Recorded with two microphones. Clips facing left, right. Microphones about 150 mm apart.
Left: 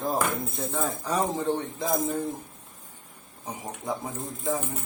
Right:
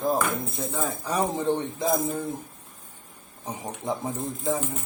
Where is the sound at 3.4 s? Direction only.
25° right (ahead or behind).